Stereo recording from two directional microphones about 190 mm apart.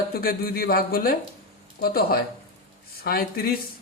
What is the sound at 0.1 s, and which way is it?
A man's voice, 50° left (ahead or behind).